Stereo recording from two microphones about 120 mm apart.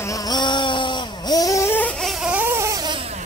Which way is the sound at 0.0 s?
30° left (ahead or behind).